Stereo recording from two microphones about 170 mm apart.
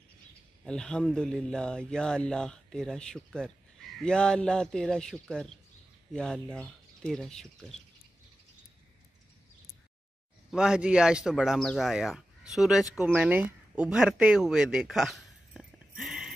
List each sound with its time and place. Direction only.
0.7 s speech: 5° left (ahead or behind)
10.5 s speech: 5° right (ahead or behind)